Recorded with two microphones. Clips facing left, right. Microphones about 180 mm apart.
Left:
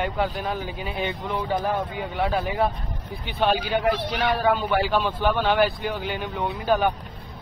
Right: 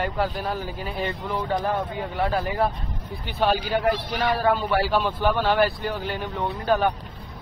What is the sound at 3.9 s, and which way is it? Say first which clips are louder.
Speech: left 1 dB; 70° left (ahead or behind).